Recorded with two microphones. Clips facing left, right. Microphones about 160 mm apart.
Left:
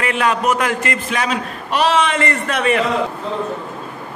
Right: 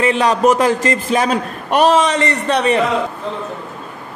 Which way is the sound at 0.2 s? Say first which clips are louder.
Right 3 dB; 35° right (ahead or behind).